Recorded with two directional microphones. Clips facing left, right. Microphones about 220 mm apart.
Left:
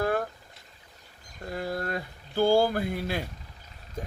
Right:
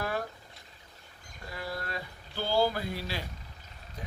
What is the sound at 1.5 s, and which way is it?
Speech, 50° left (ahead or behind).